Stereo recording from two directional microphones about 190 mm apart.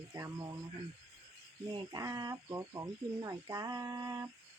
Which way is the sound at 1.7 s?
20° right (ahead or behind).